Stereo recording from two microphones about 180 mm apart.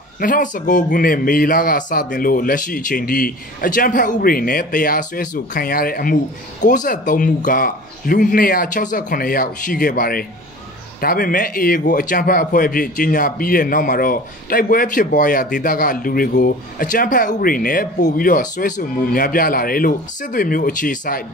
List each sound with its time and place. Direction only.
0.2 s a man's voice: 50° left (ahead or behind)